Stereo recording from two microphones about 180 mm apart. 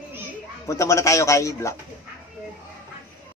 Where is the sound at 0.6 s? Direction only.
15° left (ahead or behind).